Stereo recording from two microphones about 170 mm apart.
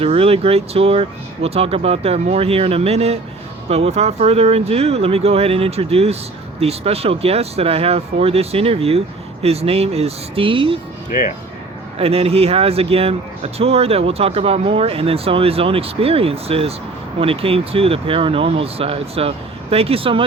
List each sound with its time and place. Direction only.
0.0 s speech: 35° right (ahead or behind)
11.1 s speech: 50° left (ahead or behind)
11.9 s speech: 35° right (ahead or behind)